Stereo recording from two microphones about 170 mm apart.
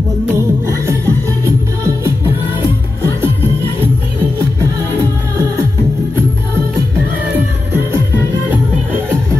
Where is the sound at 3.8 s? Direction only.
15° right (ahead or behind).